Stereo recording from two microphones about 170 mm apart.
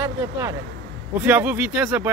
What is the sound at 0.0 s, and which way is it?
Speech, 15° right (ahead or behind).